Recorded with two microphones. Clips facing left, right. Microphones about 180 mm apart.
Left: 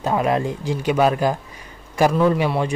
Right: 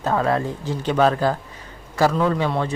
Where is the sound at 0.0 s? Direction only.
15° left (ahead or behind).